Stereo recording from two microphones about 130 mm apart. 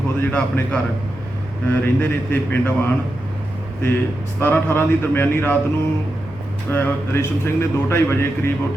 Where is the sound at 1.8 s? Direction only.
15° left (ahead or behind).